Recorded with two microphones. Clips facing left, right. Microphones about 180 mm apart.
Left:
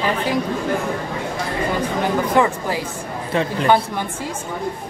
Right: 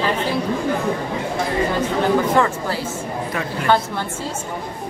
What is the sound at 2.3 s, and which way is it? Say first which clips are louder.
A woman's voice: left 1 dB; 15° left (ahead or behind).